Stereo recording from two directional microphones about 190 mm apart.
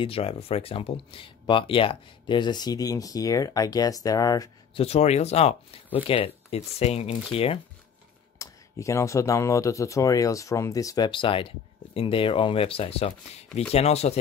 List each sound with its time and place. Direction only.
0.0 s speech: 30° left (ahead or behind)
4.8 s speech: 35° left (ahead or behind)
8.4 s speech: 15° left (ahead or behind); by 14.1 s 35° left (ahead or behind)